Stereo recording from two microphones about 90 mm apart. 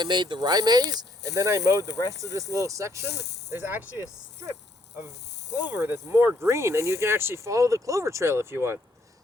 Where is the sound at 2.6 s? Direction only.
35° right (ahead or behind).